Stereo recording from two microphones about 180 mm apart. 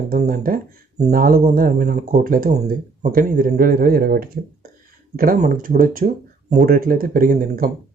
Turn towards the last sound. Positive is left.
turn(degrees=-55)  # may be behind; listen again after turning